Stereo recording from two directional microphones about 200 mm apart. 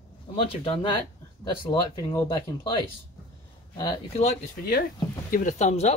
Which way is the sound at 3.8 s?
30° left (ahead or behind).